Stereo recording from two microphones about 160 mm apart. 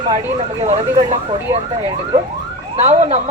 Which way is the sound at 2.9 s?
45° right (ahead or behind).